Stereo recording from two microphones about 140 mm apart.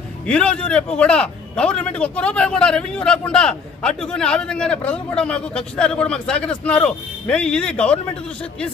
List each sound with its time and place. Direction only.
0.3 s a man's voice: 10° left (ahead or behind)